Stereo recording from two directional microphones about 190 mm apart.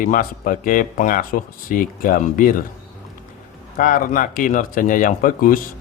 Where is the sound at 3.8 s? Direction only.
45° left (ahead or behind).